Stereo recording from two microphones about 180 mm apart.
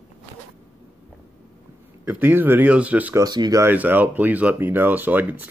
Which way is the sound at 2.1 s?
10° right (ahead or behind).